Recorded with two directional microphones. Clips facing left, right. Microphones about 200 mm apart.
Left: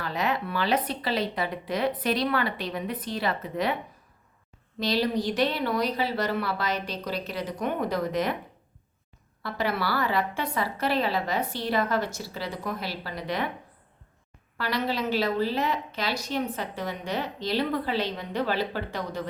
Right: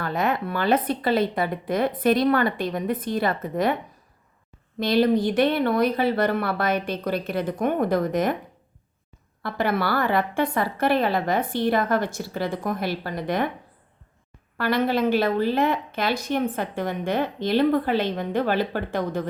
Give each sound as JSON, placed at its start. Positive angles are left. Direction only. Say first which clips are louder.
{"t": 0.0, "sound": "a woman's voice", "louder": "right 4 dB", "side_deg": -50}
{"t": 4.8, "sound": "a woman's voice", "louder": "right 6 dB", "side_deg": -55}
{"t": 9.4, "sound": "a woman's voice", "louder": "right 4 dB", "side_deg": -55}
{"t": 14.6, "sound": "a woman's voice", "louder": "right 7 dB", "side_deg": -50}